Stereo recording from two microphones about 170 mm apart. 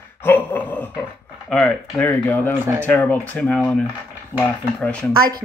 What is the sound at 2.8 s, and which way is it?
Speech, 10° left (ahead or behind).